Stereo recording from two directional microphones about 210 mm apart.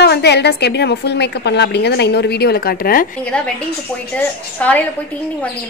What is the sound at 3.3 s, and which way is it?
A woman's voice, 5° left (ahead or behind).